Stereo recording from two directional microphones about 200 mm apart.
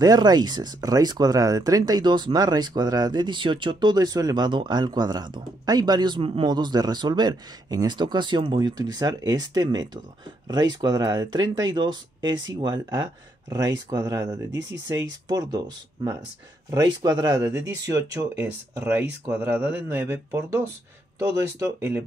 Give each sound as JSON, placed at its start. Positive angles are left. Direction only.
{"t": 0.0, "sound": "speech", "side_deg": -20}